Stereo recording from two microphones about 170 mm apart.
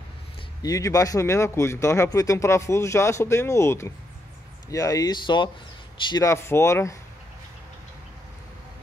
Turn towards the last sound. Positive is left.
turn(degrees=15)  # may be behind; listen again after turning